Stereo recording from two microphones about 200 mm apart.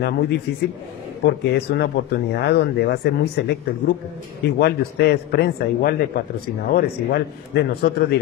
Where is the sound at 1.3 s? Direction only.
55° left (ahead or behind).